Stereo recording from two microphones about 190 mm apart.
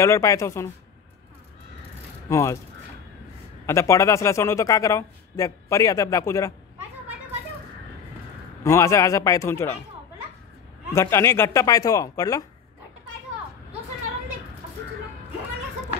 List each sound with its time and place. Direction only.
0.0 s a man's voice: 15° left (ahead or behind)
2.2 s speech: 15° left (ahead or behind)
3.6 s a man's voice: 15° left (ahead or behind)
8.6 s a man's voice: 15° left (ahead or behind)
10.9 s a man's voice: 15° left (ahead or behind)